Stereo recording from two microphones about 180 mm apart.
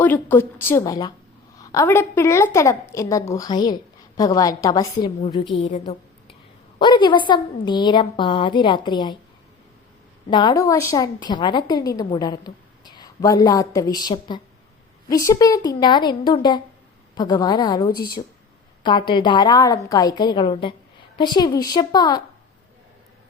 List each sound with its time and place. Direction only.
0.0 s a woman's voice: 10° left (ahead or behind); by 5.5 s 30° left (ahead or behind)
5.8 s a sound: 30° left (ahead or behind)
6.7 s a woman's voice: 25° left (ahead or behind)
10.2 s a woman's voice: 25° left (ahead or behind)
17.9 s speech: 55° left (ahead or behind)
18.8 s a woman's voice: 25° left (ahead or behind)